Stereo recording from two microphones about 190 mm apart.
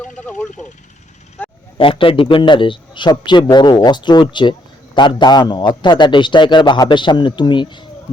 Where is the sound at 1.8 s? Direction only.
30° left (ahead or behind).